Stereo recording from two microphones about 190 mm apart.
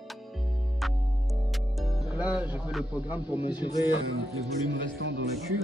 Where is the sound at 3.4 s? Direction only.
25° left (ahead or behind).